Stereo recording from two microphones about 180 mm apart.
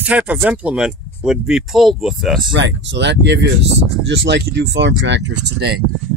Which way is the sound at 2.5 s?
80° right.